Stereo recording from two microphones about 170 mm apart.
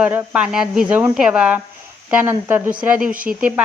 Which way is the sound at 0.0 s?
10° right (ahead or behind).